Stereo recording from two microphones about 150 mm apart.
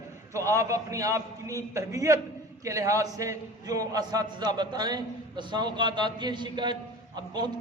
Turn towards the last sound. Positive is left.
turn(degrees=-30)  # may be behind; listen again after turning